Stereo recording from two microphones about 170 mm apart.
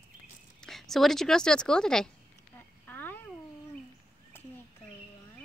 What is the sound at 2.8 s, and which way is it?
Cat, 10° left (ahead or behind).